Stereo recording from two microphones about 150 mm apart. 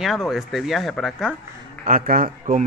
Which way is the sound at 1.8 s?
65° right (ahead or behind).